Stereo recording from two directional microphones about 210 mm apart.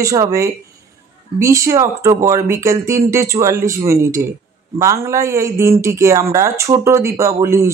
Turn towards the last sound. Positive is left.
turn(degrees=-15)  # may be behind; listen again after turning